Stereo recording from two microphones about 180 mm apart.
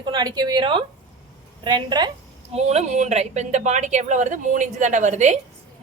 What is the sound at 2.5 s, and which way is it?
A woman's voice, 35° right (ahead or behind).